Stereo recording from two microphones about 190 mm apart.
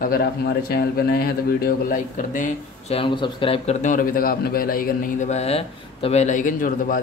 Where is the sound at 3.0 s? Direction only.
25° left (ahead or behind).